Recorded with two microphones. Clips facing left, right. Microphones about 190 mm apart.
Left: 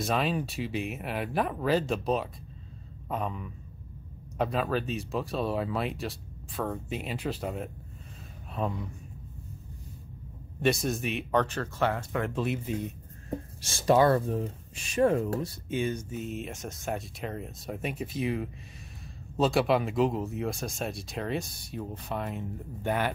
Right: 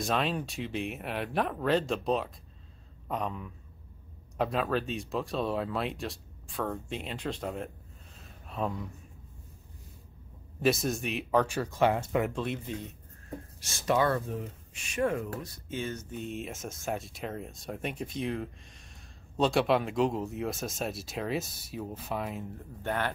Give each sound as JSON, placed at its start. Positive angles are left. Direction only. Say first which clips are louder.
{"t": 0.0, "sound": "speech", "louder": "left 2 dB", "side_deg": 0}
{"t": 10.6, "sound": "speech", "louder": "left 1 dB", "side_deg": 0}
{"t": 11.4, "sound": "speech", "louder": "right 2 dB", "side_deg": -10}
{"t": 12.2, "sound": "speech", "louder": "left 1 dB", "side_deg": 5}
{"t": 13.3, "sound": "speech", "louder": "left 6 dB", "side_deg": 30}
{"t": 15.7, "sound": "a sound", "louder": "left 5 dB", "side_deg": 15}
{"t": 16.2, "sound": "speech", "louder": "left 1 dB", "side_deg": 0}
{"t": 22.8, "sound": "a sound", "louder": "left 3 dB", "side_deg": 10}